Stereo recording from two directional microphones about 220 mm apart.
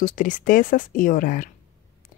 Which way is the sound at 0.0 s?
35° left (ahead or behind).